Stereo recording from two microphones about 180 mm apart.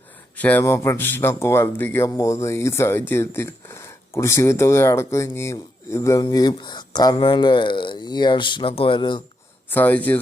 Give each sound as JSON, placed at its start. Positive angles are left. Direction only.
{"t": 0.3, "sound": "speech", "side_deg": 10}
{"t": 9.6, "sound": "speech", "side_deg": 10}